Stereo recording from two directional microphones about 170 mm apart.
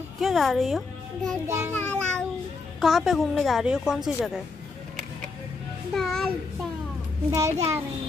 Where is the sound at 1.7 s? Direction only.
10° left (ahead or behind).